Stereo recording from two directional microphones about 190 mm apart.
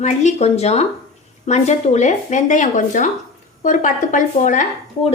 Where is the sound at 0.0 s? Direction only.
40° left (ahead or behind).